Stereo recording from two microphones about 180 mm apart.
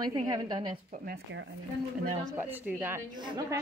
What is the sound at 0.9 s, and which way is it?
Speech, 55° right (ahead or behind).